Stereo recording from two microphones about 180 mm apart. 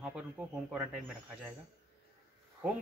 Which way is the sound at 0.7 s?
Centre (ahead or behind).